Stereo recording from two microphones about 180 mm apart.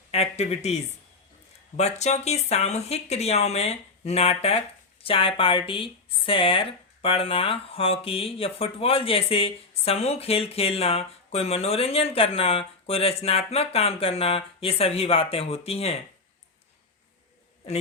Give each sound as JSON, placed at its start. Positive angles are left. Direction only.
{"t": 0.1, "sound": "speech", "side_deg": 35}